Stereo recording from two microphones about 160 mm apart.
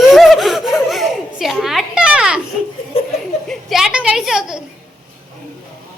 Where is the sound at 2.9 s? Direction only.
35° left (ahead or behind).